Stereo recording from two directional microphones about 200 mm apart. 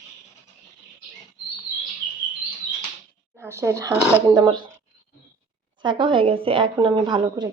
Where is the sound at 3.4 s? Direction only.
15° right (ahead or behind).